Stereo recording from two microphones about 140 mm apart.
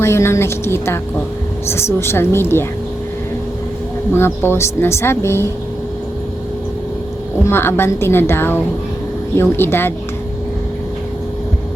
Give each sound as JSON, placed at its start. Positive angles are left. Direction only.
{"t": 0.0, "sound": "speech", "side_deg": 20}
{"t": 4.1, "sound": "speech", "side_deg": 15}
{"t": 7.4, "sound": "speech", "side_deg": 15}